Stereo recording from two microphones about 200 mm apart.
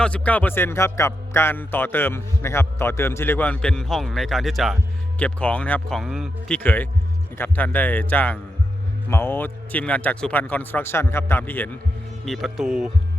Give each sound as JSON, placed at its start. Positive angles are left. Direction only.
{"t": 0.0, "sound": "speech", "side_deg": 5}